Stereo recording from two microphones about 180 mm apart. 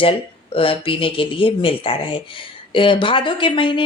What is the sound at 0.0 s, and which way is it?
Speech, 30° left (ahead or behind).